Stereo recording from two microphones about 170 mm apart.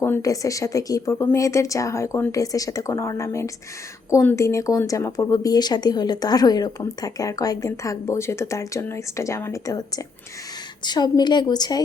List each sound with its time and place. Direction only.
0.0 s speech: 15° left (ahead or behind)